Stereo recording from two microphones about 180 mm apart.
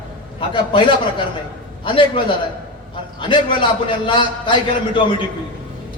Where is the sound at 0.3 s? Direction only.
25° left (ahead or behind).